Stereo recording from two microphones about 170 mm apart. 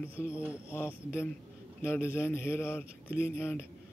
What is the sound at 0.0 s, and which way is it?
Speech, 15° left (ahead or behind).